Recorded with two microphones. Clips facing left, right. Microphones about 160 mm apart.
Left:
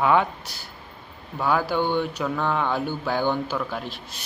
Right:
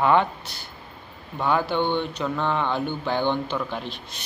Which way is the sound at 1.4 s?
5° left (ahead or behind).